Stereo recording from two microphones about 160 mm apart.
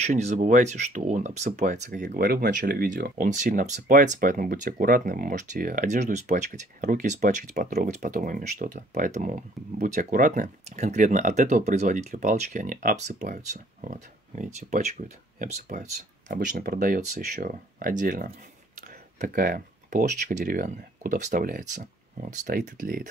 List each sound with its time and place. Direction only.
0.0 s speech: 45° right (ahead or behind)
1.9 s speech: 65° right (ahead or behind)
3.3 s speech: 50° right (ahead or behind)
7.5 s speech: 70° right (ahead or behind)